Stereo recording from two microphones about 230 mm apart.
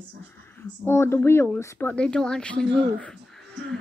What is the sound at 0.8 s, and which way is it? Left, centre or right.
Speech, centre.